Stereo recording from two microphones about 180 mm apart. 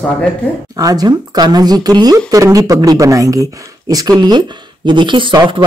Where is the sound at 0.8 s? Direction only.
20° right (ahead or behind).